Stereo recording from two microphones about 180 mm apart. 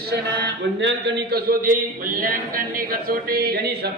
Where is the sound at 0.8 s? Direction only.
75° right (ahead or behind).